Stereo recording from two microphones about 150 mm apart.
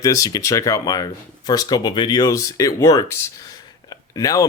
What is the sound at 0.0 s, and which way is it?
Speech, 25° left (ahead or behind).